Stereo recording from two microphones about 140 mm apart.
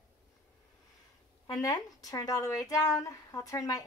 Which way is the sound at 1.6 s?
25° left (ahead or behind).